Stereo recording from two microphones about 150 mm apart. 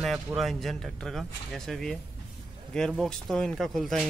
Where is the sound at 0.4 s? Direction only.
Centre (ahead or behind).